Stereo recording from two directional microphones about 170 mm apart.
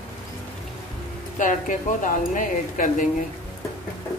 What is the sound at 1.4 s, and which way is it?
Speech, 50° left (ahead or behind).